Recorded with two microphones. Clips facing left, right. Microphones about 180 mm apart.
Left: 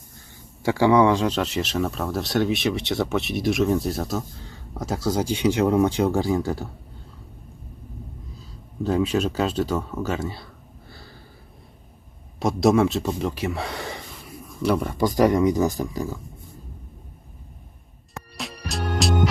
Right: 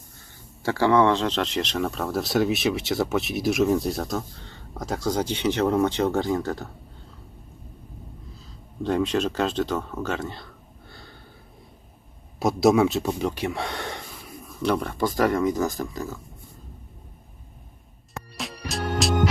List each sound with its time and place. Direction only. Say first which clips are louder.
0.6 s speech: left 2 dB; 15° left (ahead or behind)
8.8 s speech: left 1 dB; 5° left (ahead or behind)
12.4 s speech: even; centre (ahead or behind)
18.3 s music: even; centre (ahead or behind)